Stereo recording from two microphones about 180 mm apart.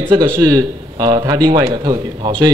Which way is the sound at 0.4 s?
20° right (ahead or behind).